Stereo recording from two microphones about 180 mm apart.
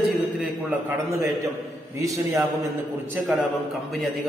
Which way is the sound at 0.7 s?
10° right (ahead or behind).